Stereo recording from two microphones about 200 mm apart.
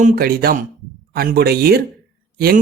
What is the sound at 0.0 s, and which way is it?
Speech, 50° right (ahead or behind).